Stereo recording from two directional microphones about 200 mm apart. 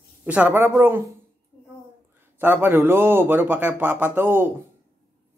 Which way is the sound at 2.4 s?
10° right (ahead or behind).